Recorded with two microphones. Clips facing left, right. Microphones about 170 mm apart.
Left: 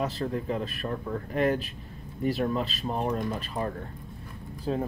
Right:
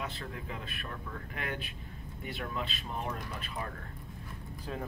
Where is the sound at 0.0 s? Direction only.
40° left (ahead or behind).